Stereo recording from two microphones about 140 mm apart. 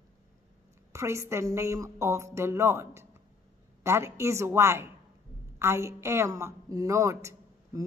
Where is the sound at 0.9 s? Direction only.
20° right (ahead or behind).